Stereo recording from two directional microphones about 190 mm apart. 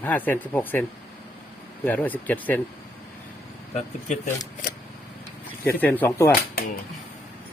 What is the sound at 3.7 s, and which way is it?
Speech, 40° left (ahead or behind).